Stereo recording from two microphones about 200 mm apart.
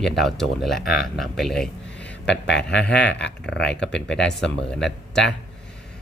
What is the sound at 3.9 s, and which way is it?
Speech, 5° left (ahead or behind).